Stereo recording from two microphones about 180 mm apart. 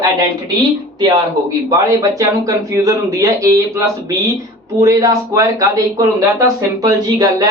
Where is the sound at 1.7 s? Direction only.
20° right (ahead or behind).